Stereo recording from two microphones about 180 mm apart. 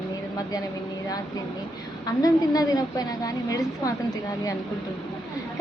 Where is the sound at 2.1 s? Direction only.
20° left (ahead or behind).